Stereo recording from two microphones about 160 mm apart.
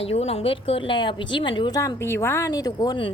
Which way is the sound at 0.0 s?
40° left (ahead or behind).